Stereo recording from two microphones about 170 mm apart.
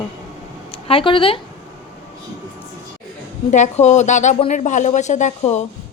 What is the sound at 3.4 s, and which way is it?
Speech, 45° left (ahead or behind).